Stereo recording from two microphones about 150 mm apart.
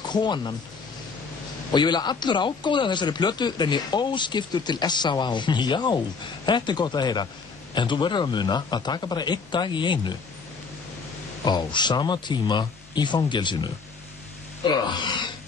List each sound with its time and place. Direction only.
0.1 s speech: 30° left (ahead or behind)
1.7 s speech: 30° left (ahead or behind)
11.4 s speech: 30° left (ahead or behind)